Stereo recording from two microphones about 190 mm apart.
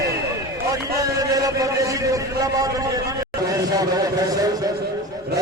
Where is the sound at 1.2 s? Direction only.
20° right (ahead or behind).